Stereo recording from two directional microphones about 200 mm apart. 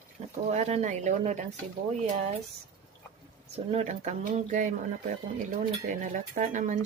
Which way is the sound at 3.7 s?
35° right (ahead or behind).